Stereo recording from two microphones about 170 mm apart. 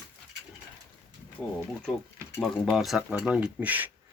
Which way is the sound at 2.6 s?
Centre (ahead or behind).